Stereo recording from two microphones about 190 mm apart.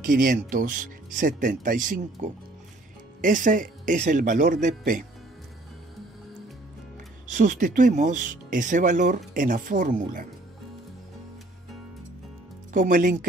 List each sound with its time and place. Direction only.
0.0 s speech: 45° right (ahead or behind)
7.2 s speech: 40° right (ahead or behind)
12.7 s speech: 45° right (ahead or behind)